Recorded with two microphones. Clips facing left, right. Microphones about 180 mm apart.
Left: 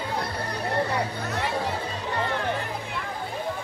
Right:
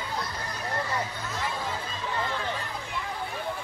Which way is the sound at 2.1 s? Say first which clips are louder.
Left 4 dB; 65° left (ahead or behind).